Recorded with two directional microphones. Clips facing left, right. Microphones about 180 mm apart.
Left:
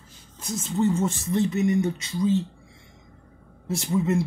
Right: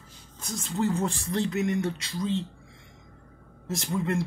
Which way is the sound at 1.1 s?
90° right.